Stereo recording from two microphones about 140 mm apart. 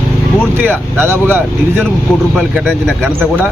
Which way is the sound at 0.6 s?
15° right (ahead or behind).